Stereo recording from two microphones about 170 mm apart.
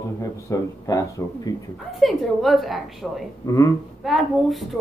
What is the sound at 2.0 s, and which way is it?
A woman's voice, centre (ahead or behind).